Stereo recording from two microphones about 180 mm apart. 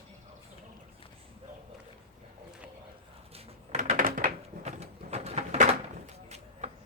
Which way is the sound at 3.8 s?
50° right (ahead or behind).